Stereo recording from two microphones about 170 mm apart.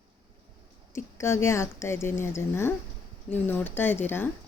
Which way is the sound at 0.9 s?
15° left (ahead or behind).